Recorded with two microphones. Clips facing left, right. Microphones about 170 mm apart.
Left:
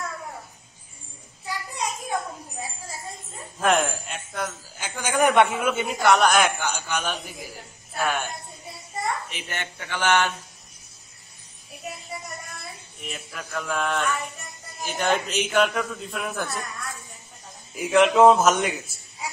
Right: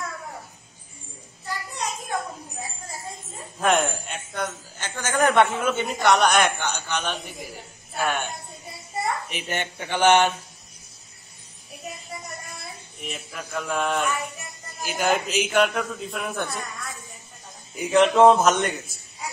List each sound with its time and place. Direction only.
3.5 s a man's voice: centre (ahead or behind)
9.0 s a child's voice: 20° right (ahead or behind)
13.0 s a man's voice: centre (ahead or behind)
17.7 s a man's voice: centre (ahead or behind)